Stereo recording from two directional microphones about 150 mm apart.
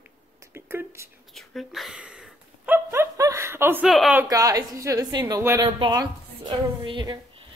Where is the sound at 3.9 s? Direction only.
Centre (ahead or behind).